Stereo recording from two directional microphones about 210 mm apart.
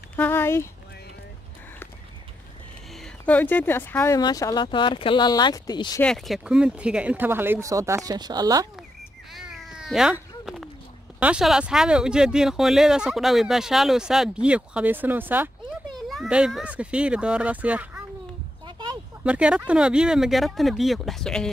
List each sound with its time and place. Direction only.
0.1 s speech: 10° left (ahead or behind)
2.9 s speech: 5° left (ahead or behind)
6.0 s speech: centre (ahead or behind); by 8.6 s 20° right (ahead or behind)
9.3 s cat: centre (ahead or behind)
11.1 s speech: 5° right (ahead or behind)
18.7 s a sound: 20° right (ahead or behind)
19.2 s speech: 5° right (ahead or behind)